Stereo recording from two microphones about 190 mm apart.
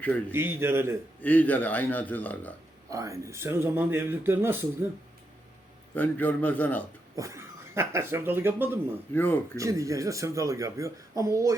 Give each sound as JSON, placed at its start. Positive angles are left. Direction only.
{"t": 0.3, "sound": "speech", "side_deg": -10}
{"t": 1.2, "sound": "a man's voice", "side_deg": 10}
{"t": 2.9, "sound": "speech", "side_deg": -15}
{"t": 6.0, "sound": "a man's voice", "side_deg": 10}
{"t": 7.2, "sound": "speech", "side_deg": -15}
{"t": 9.1, "sound": "a man's voice", "side_deg": 10}
{"t": 9.6, "sound": "speech", "side_deg": -15}